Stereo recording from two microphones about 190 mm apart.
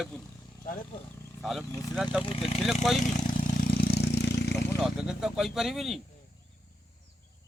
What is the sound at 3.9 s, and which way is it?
Vehicle, 60° left (ahead or behind).